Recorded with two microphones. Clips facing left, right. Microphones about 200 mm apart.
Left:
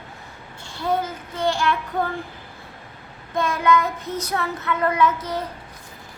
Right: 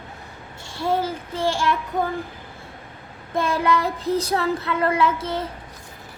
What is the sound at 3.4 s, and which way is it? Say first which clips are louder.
Child singing: left 1 dB; 30° right (ahead or behind).